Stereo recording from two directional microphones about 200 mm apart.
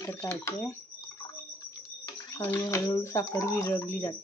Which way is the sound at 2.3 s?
15° left (ahead or behind).